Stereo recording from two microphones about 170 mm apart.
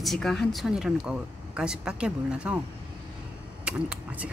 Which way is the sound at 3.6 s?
10° right (ahead or behind).